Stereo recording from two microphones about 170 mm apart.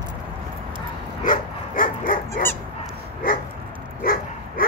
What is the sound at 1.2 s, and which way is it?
Dog, 55° left (ahead or behind).